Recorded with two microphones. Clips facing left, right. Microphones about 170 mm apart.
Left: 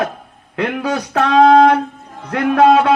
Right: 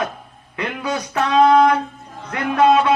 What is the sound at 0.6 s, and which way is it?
A man's voice, 60° left (ahead or behind).